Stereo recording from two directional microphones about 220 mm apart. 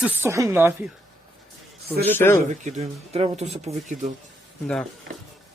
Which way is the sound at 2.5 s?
30° right (ahead or behind).